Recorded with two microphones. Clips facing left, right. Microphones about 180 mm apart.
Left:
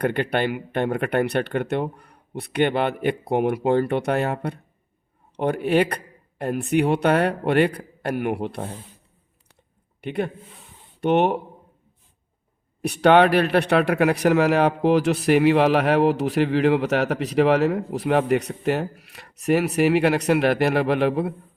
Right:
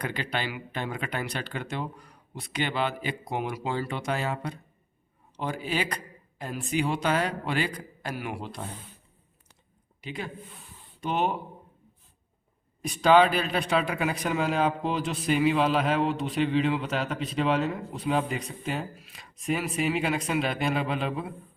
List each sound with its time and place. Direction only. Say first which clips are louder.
0.0 s speech: left 10 dB; 60° left (ahead or behind)
10.0 s speech: left 10 dB; 60° left (ahead or behind)
12.8 s speech: left 4 dB; 65° left (ahead or behind)